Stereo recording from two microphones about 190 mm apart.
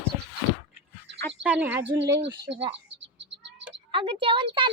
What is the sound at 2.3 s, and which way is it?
Speech, 25° right (ahead or behind).